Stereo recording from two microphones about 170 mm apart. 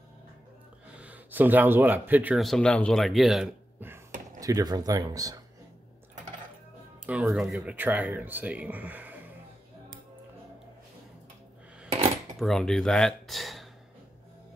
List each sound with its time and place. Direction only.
0.9 s speech: 10° right (ahead or behind)
2.4 s speech: 5° left (ahead or behind)
4.4 s speech: 20° right (ahead or behind)
7.1 s speech: 5° right (ahead or behind)
12.4 s speech: 5° left (ahead or behind)